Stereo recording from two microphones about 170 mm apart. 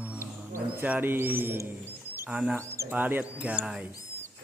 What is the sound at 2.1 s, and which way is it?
Speech, 10° right (ahead or behind).